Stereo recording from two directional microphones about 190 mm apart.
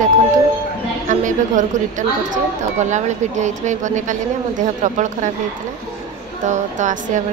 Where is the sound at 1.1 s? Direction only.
40° right (ahead or behind).